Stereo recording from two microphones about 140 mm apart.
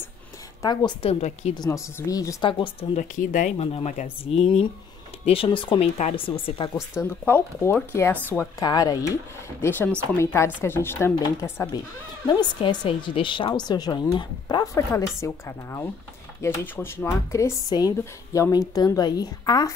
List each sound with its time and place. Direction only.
0.6 s a woman's voice: 30° left (ahead or behind)
1.7 s speech: 20° left (ahead or behind)
2.6 s speech: 45° left (ahead or behind)
3.0 s speech: 65° left (ahead or behind)
3.5 s a woman's voice: 45° left (ahead or behind)
6.9 s speech: 15° left (ahead or behind)
8.5 s speech: 25° left (ahead or behind)
12.3 s a woman's voice: 35° left (ahead or behind)